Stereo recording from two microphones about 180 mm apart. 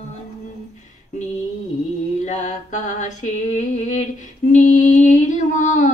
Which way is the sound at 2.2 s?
45° left (ahead or behind).